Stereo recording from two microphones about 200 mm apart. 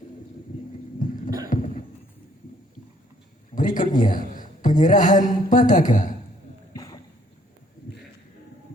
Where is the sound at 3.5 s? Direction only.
40° left (ahead or behind).